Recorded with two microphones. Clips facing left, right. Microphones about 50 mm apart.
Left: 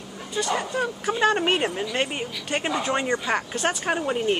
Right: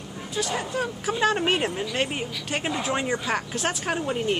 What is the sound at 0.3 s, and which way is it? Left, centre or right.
Speech, centre.